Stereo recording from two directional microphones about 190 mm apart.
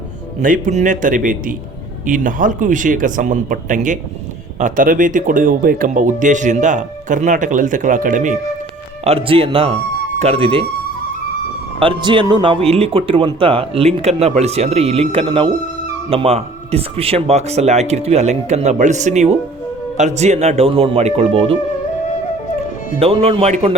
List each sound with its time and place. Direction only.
0.4 s speech: 45° right (ahead or behind)
9.0 s speech: 30° right (ahead or behind)
11.8 s speech: 25° right (ahead or behind)
23.0 s speech: 30° right (ahead or behind)